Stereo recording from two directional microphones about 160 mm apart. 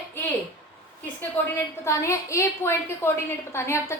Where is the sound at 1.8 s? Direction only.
20° left (ahead or behind).